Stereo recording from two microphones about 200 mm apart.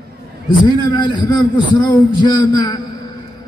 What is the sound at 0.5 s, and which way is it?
A man's voice, 20° left (ahead or behind).